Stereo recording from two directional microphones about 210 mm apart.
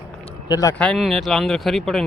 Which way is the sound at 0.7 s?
5° left (ahead or behind).